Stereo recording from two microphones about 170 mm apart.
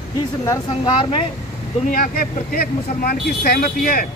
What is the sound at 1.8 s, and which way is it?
Speech, 55° left (ahead or behind).